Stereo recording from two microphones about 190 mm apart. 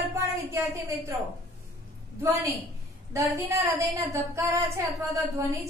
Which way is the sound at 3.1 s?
15° right (ahead or behind).